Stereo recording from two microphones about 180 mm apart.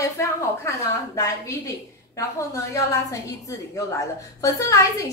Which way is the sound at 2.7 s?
20° left (ahead or behind).